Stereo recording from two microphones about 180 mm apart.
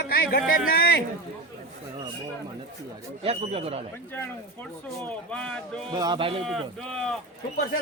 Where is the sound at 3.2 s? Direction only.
35° right (ahead or behind).